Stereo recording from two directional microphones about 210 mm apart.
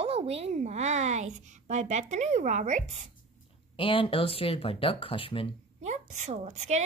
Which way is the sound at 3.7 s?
25° left (ahead or behind).